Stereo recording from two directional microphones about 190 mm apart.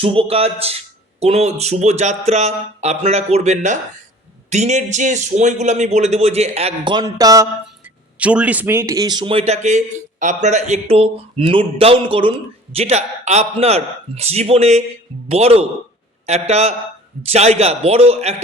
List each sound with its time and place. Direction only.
0.0 s a man's voice: 30° right (ahead or behind)
8.2 s a man's voice: 5° right (ahead or behind); by 18.3 s 35° right (ahead or behind)